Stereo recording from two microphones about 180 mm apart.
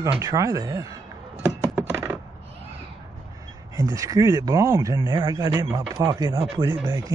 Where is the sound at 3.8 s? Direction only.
20° right (ahead or behind).